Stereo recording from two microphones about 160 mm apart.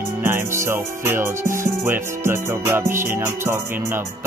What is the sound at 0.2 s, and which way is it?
Music, 15° right (ahead or behind).